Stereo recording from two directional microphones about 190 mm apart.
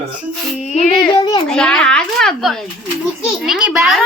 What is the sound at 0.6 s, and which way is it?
Music, 40° left (ahead or behind).